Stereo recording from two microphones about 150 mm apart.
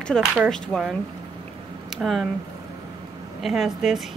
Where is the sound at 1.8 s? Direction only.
Centre (ahead or behind).